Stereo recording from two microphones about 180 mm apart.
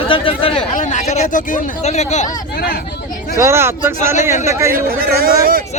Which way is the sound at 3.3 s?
15° right (ahead or behind).